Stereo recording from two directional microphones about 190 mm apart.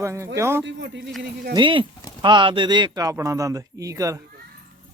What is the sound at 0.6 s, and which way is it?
Speech, 70° right (ahead or behind).